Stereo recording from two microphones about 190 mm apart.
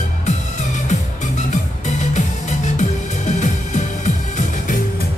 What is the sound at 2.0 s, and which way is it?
Music, 40° left (ahead or behind).